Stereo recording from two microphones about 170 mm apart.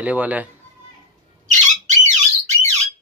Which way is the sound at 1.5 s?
45° right (ahead or behind).